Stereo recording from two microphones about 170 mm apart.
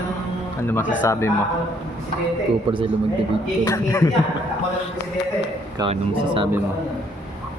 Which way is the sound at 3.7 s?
15° left (ahead or behind).